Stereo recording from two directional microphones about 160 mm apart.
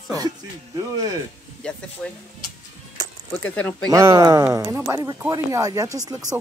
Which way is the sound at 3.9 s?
20° right (ahead or behind).